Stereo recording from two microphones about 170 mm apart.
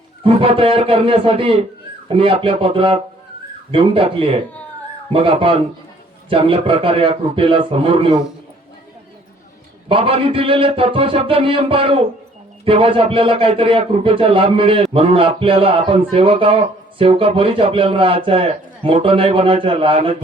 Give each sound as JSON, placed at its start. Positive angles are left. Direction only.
{"t": 0.3, "sound": "a man's voice", "side_deg": -35}
{"t": 9.9, "sound": "a man's voice", "side_deg": -30}